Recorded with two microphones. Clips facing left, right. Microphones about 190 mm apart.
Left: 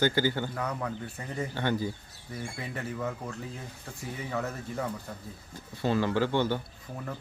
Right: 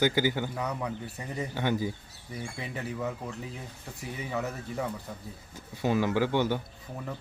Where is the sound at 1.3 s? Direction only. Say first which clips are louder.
Even; 10° right (ahead or behind).